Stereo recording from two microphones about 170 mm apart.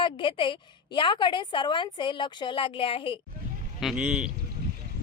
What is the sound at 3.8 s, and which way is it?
Speech, 5° right (ahead or behind).